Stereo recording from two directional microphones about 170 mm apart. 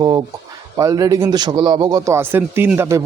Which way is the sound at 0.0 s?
25° right (ahead or behind).